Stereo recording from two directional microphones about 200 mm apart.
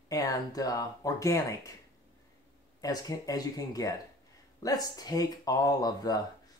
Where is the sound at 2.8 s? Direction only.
20° left (ahead or behind).